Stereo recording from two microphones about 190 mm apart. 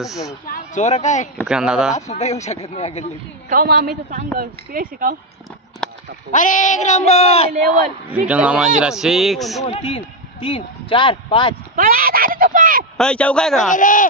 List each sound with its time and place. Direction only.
0.5 s speech: 40° left (ahead or behind)
1.4 s speech: 5° right (ahead or behind)
2.0 s speech: 35° left (ahead or behind)
3.4 s speech: 50° right (ahead or behind)
5.8 s a sound: 5° left (ahead or behind)
6.3 s speech: 40° left (ahead or behind)
8.1 s speech: 5° right (ahead or behind)
9.6 s speech: 25° left (ahead or behind)
11.7 s speech: 50° right (ahead or behind)
12.9 s speech: 5° left (ahead or behind)
13.7 s speech: 45° left (ahead or behind)